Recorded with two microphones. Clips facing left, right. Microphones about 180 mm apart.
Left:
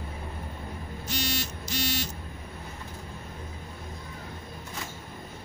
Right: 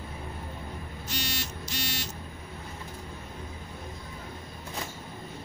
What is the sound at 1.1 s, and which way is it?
Buzzer, 45° left (ahead or behind).